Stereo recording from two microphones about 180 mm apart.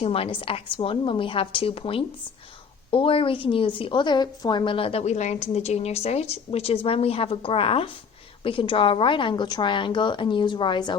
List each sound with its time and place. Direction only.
0.0 s a woman's voice: 30° left (ahead or behind)